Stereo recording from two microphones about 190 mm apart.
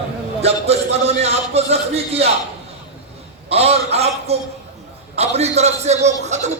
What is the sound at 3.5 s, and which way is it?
A man's voice, 35° right (ahead or behind).